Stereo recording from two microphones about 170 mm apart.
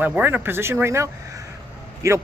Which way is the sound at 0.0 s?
10° right (ahead or behind).